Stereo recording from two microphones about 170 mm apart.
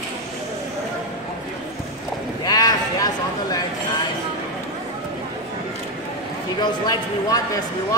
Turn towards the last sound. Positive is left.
turn(degrees=20)  # may be behind; listen again after turning